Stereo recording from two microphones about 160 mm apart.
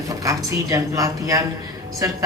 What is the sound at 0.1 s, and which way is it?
Speech, 20° right (ahead or behind).